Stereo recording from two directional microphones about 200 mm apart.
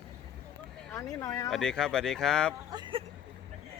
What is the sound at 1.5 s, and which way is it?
Speech, centre (ahead or behind).